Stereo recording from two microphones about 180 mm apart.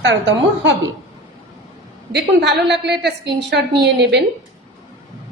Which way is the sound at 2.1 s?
65° right (ahead or behind).